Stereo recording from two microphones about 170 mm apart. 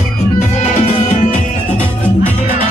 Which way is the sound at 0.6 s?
40° left (ahead or behind).